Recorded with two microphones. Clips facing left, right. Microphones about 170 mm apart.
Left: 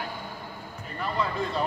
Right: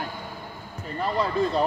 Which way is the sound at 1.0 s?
35° right (ahead or behind).